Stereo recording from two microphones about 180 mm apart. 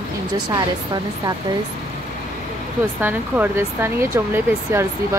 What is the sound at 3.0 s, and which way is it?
Speech, 10° right (ahead or behind).